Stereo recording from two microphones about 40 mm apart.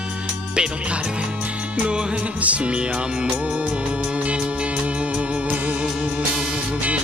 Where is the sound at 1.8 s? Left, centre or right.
Right.